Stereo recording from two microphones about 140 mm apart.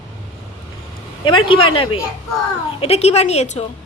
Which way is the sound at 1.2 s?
40° left (ahead or behind).